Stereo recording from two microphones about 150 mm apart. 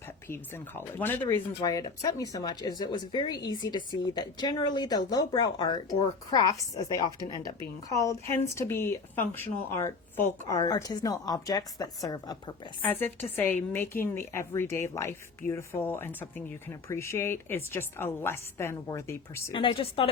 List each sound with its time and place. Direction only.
0.3 s speech: 15° left (ahead or behind)
12.8 s speech: 10° left (ahead or behind)
19.5 s speech: 35° left (ahead or behind)